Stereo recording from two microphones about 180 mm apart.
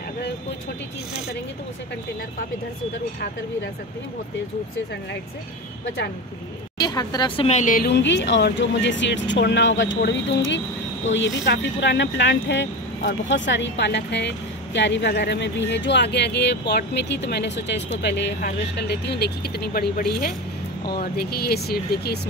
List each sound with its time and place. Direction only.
6.8 s speech: 20° left (ahead or behind); by 7.9 s 50° left (ahead or behind)
7.9 s speech: 75° left (ahead or behind); by 22.2 s 60° left (ahead or behind)